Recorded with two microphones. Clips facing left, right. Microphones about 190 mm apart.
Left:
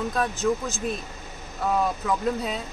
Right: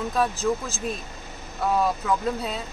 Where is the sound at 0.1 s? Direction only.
Centre (ahead or behind).